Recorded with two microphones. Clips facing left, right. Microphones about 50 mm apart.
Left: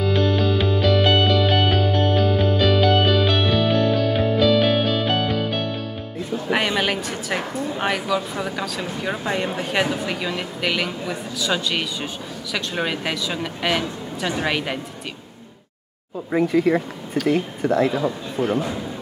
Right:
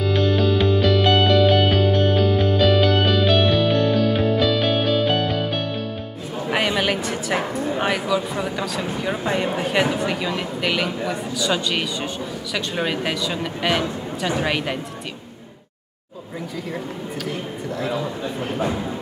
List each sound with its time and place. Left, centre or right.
0.1 s music: centre
6.5 s a woman's voice: centre
16.3 s speech: left